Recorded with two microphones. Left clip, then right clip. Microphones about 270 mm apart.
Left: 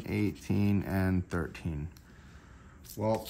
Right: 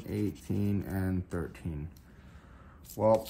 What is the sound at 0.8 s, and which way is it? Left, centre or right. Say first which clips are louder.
Speech: left 3 dB; centre.